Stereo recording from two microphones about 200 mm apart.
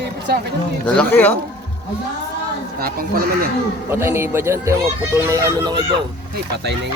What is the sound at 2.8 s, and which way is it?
Speech, 50° right (ahead or behind).